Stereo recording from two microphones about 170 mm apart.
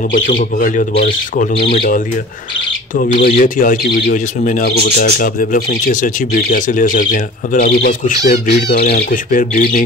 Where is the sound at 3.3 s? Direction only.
50° left (ahead or behind).